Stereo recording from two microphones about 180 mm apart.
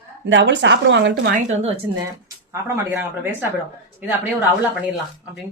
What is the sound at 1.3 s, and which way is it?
Speech, 45° right (ahead or behind).